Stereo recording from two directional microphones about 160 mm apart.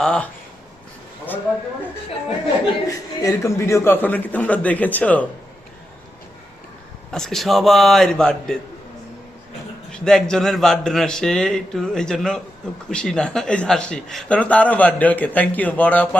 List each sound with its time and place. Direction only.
0.0 s speech: 5° left (ahead or behind)
2.8 s a man's voice: 20° left (ahead or behind)
7.1 s speech: 5° left (ahead or behind)
9.9 s a man's voice: 5° left (ahead or behind)